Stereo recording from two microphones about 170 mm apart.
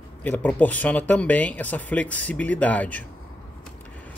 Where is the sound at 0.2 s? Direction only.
10° left (ahead or behind).